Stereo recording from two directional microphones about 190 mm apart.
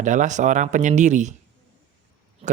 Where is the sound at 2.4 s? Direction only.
30° right (ahead or behind).